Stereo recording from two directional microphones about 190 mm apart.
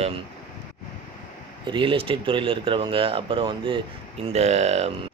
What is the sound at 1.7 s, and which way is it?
Speech, 25° right (ahead or behind).